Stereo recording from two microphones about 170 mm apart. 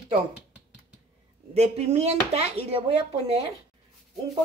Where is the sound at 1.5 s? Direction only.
40° right (ahead or behind).